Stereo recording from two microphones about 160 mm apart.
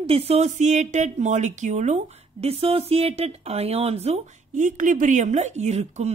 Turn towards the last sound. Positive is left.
turn(degrees=-45)  # may be behind; listen again after turning